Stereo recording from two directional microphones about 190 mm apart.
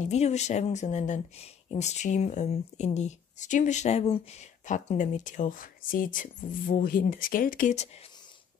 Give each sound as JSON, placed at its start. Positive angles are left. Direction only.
{"t": 0.0, "sound": "speech", "side_deg": 35}